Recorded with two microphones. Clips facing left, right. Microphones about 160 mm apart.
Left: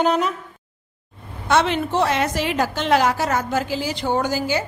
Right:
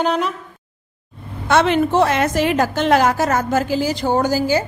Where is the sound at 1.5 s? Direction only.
55° right (ahead or behind).